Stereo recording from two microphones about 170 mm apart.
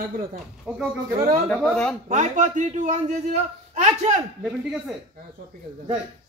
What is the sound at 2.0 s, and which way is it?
A man's voice, 45° right (ahead or behind).